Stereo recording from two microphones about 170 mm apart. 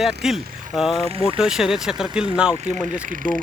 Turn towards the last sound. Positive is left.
turn(degrees=-55)  # may be behind; listen again after turning